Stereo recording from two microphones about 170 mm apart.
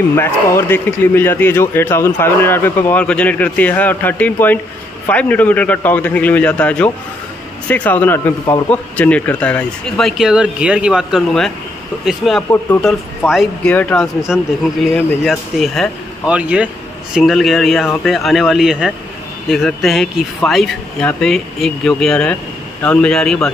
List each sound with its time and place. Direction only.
0.1 s a man's voice: 15° left (ahead or behind); by 13.7 s centre (ahead or behind)
13.7 s a man's voice: 10° left (ahead or behind)
14.3 s speech: centre (ahead or behind)